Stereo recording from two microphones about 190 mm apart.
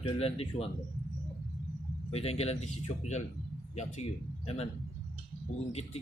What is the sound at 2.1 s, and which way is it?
A man's voice, 30° left (ahead or behind).